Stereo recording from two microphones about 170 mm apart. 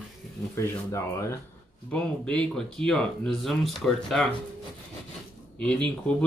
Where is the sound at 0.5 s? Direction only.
15° left (ahead or behind).